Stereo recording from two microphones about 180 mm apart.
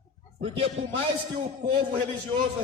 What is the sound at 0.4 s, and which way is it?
Speech, 30° right (ahead or behind).